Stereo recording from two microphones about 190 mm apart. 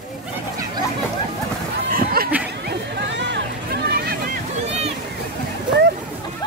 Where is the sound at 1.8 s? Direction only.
50° right (ahead or behind).